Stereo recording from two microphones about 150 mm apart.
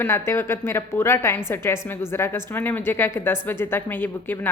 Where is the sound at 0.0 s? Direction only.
15° left (ahead or behind).